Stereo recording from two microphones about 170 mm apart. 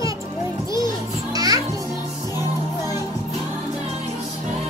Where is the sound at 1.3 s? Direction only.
20° right (ahead or behind).